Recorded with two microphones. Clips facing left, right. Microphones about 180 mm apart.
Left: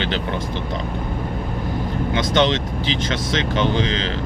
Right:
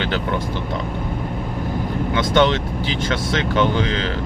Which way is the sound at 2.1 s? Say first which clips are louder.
Right 2 dB; 55° right (ahead or behind).